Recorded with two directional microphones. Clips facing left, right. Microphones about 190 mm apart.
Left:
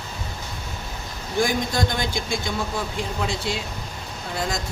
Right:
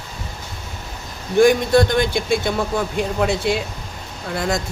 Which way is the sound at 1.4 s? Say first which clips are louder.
Right 10 dB; 60° right (ahead or behind).